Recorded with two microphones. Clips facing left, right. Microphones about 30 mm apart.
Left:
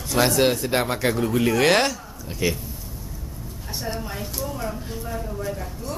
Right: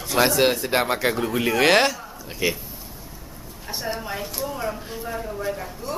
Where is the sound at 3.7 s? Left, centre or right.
Centre.